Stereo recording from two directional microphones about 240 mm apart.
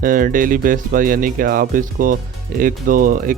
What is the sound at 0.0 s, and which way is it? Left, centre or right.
Speech, right.